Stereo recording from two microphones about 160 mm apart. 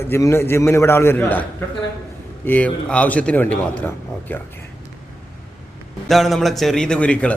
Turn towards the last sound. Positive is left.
turn(degrees=10)  # may be behind; listen again after turning